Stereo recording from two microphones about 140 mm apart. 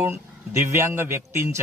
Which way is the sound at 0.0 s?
20° right (ahead or behind).